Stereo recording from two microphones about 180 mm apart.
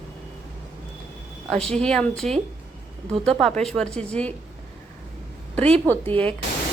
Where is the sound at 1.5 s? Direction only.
5° left (ahead or behind).